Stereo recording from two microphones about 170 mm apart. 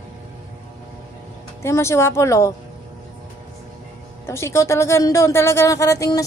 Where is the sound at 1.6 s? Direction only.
15° left (ahead or behind).